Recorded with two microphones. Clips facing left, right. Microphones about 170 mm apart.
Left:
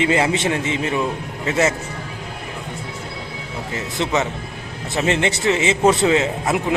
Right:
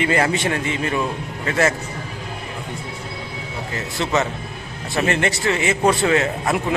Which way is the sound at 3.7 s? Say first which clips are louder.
Even; 20° left (ahead or behind).